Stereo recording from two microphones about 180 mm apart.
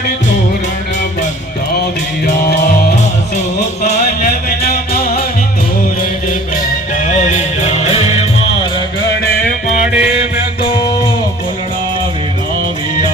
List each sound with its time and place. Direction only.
7.0 s music: 40° left (ahead or behind)
9.0 s music: 60° left (ahead or behind)
9.8 s music: 5° right (ahead or behind)
10.2 s music: 25° left (ahead or behind)